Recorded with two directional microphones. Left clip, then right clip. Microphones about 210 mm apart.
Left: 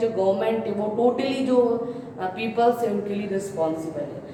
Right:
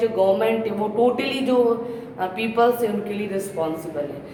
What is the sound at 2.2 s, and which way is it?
Speech, 15° right (ahead or behind).